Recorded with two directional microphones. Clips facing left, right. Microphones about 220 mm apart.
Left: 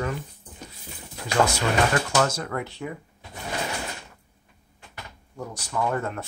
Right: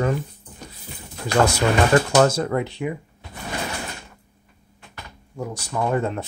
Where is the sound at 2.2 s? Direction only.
30° right (ahead or behind).